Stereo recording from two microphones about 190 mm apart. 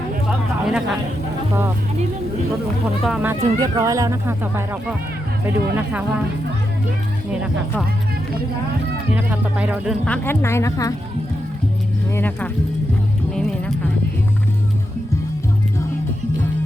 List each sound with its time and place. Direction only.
0.3 s a sound: 5° right (ahead or behind)
3.0 s speech: 5° right (ahead or behind)
9.1 s speech: 10° right (ahead or behind)
10.2 s speech: 15° left (ahead or behind)
12.1 s speech: 10° left (ahead or behind)
13.3 s music: centre (ahead or behind)